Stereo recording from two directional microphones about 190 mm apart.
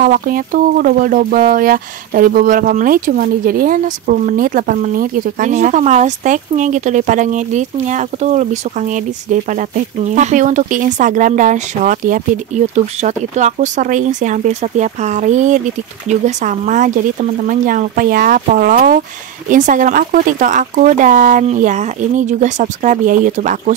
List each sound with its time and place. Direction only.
0.0 s speech: 50° right (ahead or behind)